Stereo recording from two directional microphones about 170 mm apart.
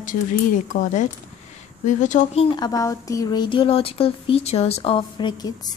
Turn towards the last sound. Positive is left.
turn(degrees=25)  # may be behind; listen again after turning